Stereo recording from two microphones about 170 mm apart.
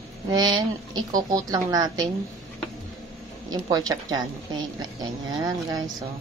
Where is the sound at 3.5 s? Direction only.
20° right (ahead or behind).